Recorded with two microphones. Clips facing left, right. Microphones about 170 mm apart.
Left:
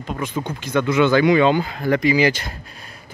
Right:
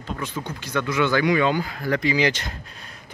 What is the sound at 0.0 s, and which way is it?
Speech, 15° left (ahead or behind).